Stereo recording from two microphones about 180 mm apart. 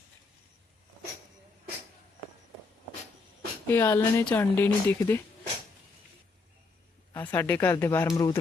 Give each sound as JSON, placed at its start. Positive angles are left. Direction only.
{"t": 3.7, "sound": "speech", "side_deg": 15}
{"t": 7.1, "sound": "speech", "side_deg": 10}